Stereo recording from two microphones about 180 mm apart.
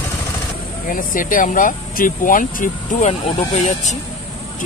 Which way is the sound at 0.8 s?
50° left (ahead or behind).